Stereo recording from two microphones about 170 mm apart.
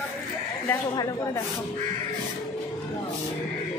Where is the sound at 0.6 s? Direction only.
20° left (ahead or behind).